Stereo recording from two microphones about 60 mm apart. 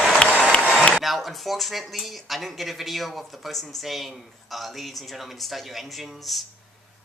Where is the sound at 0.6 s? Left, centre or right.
Centre.